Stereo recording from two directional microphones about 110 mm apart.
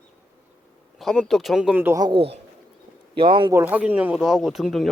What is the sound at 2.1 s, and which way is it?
Speech, 65° right (ahead or behind).